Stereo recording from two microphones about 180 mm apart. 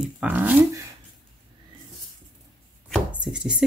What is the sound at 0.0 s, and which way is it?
Speech, 5° right (ahead or behind).